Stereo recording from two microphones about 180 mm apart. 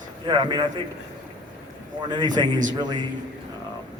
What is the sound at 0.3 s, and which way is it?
Speech, 25° right (ahead or behind).